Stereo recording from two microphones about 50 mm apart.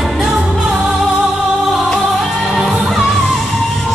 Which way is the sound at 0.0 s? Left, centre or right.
Centre.